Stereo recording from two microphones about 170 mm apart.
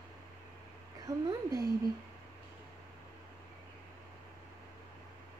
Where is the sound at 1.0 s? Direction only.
20° right (ahead or behind).